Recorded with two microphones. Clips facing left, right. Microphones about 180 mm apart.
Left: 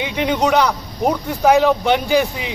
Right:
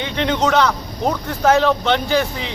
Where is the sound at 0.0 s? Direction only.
10° left (ahead or behind).